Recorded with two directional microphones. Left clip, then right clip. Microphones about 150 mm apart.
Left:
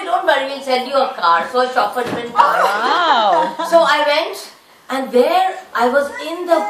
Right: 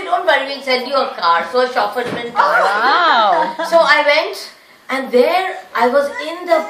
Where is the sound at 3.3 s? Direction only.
40° right (ahead or behind).